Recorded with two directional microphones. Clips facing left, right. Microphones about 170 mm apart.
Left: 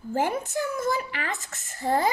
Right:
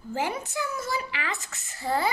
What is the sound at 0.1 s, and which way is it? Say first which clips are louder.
A child's voice: left 4 dB; 50° left (ahead or behind).